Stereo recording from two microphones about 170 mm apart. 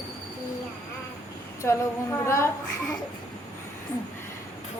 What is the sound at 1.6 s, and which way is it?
Speech, 15° left (ahead or behind).